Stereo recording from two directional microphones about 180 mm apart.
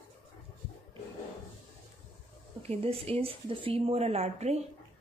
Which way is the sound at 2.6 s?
35° right (ahead or behind).